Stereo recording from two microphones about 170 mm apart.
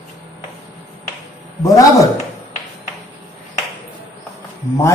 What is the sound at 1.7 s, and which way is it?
Speech, 20° left (ahead or behind).